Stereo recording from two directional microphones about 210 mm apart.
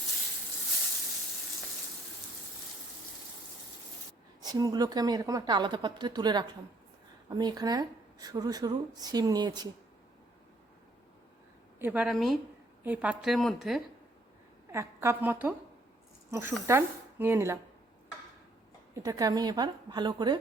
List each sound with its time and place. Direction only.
4.4 s a woman's voice: 15° right (ahead or behind)
11.8 s a woman's voice: 5° right (ahead or behind)
14.7 s a woman's voice: 10° right (ahead or behind)
19.0 s a woman's voice: 15° right (ahead or behind)